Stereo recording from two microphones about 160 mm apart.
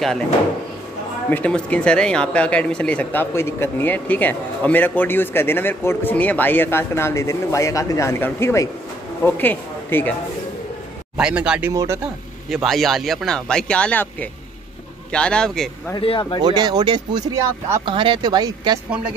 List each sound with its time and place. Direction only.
1.3 s speech: 10° left (ahead or behind)
11.1 s speech: 5° right (ahead or behind)
11.7 s speech: 20° right (ahead or behind)
12.4 s speech: centre (ahead or behind)
15.1 s speech: 5° left (ahead or behind)
16.0 s speech: 30° left (ahead or behind)
16.4 s speech: 25° right (ahead or behind)
17.8 s speech: 30° right (ahead or behind)